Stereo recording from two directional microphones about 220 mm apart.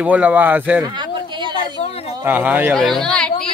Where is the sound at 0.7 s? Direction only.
15° right (ahead or behind).